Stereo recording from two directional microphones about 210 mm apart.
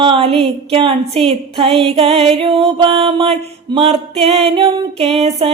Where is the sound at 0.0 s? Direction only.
25° right (ahead or behind).